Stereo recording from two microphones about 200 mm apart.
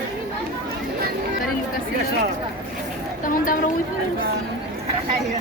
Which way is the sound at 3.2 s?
45° left (ahead or behind).